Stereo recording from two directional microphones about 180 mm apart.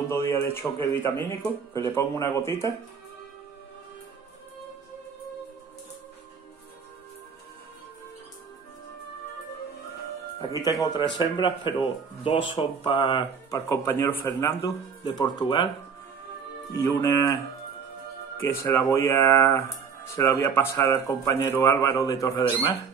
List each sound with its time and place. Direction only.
0.1 s speech: 15° left (ahead or behind)
10.4 s speech: 20° left (ahead or behind)
16.7 s speech: 15° left (ahead or behind)
18.4 s speech: 15° left (ahead or behind)